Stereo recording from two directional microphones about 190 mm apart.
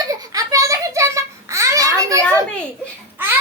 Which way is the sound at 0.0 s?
20° right (ahead or behind).